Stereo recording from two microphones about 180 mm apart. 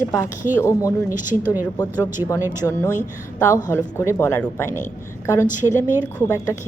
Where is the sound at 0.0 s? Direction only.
15° left (ahead or behind).